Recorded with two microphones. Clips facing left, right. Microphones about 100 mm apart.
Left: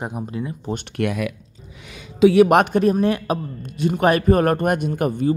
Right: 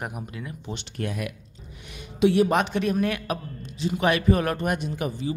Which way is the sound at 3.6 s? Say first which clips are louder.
Left 6 dB; 55° left (ahead or behind).